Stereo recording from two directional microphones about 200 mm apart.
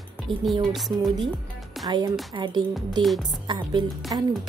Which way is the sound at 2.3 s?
20° right (ahead or behind).